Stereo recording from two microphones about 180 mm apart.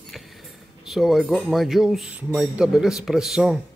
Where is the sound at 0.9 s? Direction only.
Centre (ahead or behind).